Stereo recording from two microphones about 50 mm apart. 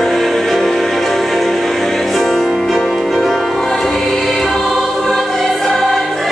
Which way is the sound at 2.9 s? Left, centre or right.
Centre.